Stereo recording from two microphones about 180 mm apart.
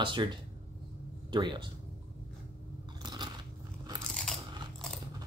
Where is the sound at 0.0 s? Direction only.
25° right (ahead or behind).